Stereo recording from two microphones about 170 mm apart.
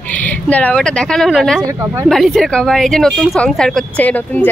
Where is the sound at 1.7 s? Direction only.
15° right (ahead or behind).